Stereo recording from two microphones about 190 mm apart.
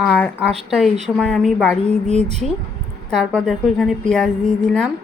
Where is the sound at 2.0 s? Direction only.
35° right (ahead or behind).